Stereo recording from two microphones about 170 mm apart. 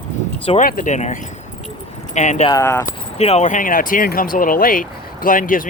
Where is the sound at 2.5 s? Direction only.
15° left (ahead or behind).